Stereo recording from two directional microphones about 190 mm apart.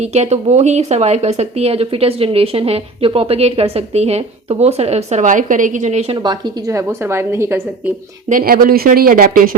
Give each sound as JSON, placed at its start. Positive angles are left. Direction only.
{"t": 0.0, "sound": "speech", "side_deg": -35}
{"t": 8.3, "sound": "speech", "side_deg": -50}